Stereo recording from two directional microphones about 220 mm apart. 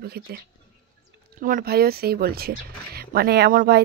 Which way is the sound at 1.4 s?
40° right (ahead or behind).